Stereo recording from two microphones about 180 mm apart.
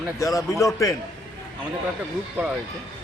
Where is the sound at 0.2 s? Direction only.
15° left (ahead or behind).